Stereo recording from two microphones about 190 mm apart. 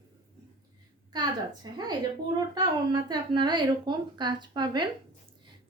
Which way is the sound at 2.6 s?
25° right (ahead or behind).